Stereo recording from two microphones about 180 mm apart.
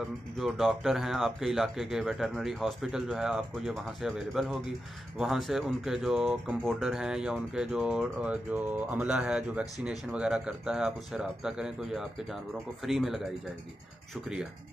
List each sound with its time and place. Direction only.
0.0 s speech: centre (ahead or behind)